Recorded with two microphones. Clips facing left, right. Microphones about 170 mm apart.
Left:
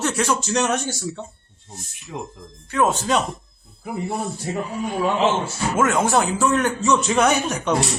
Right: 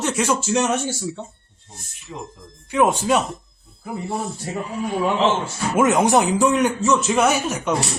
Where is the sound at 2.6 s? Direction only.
10° right (ahead or behind).